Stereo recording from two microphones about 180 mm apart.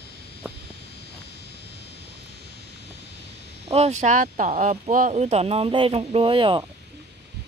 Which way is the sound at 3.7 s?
35° right (ahead or behind).